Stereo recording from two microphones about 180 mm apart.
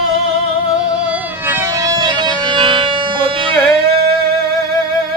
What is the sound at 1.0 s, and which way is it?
Music, 10° right (ahead or behind).